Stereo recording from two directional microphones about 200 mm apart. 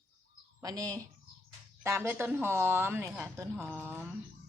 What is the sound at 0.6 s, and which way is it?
A woman's voice, 15° right (ahead or behind).